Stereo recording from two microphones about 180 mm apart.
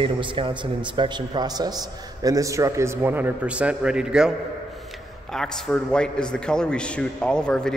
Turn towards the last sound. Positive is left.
turn(degrees=5)  # may be behind; listen again after turning